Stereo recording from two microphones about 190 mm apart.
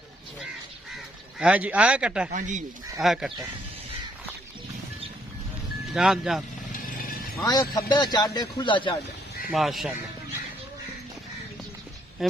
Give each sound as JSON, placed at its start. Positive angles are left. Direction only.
{"t": 1.4, "sound": "speech", "side_deg": -5}
{"t": 2.3, "sound": "speech", "side_deg": -40}
{"t": 3.0, "sound": "speech", "side_deg": 0}
{"t": 5.9, "sound": "speech", "side_deg": 0}
{"t": 6.7, "sound": "horse", "side_deg": 45}
{"t": 7.4, "sound": "a man's voice", "side_deg": 20}
{"t": 9.5, "sound": "speech", "side_deg": 0}
{"t": 12.2, "sound": "speech", "side_deg": 0}